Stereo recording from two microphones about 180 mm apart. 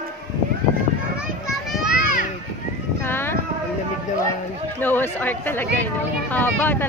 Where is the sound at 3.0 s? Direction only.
10° left (ahead or behind).